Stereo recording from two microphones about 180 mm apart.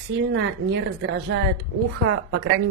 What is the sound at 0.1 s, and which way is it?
A woman's voice, 90° right.